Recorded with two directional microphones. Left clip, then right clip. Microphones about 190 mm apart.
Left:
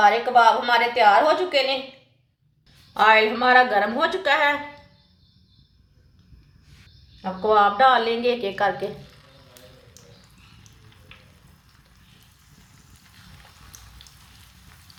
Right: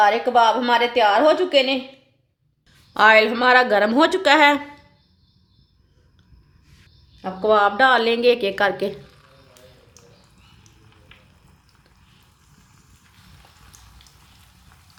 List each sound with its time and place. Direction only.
0.0 s a woman's voice: 45° right (ahead or behind)
2.9 s a woman's voice: 55° right (ahead or behind)
7.2 s a woman's voice: 50° right (ahead or behind)